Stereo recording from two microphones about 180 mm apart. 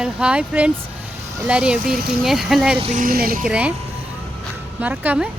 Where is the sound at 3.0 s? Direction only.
55° right (ahead or behind).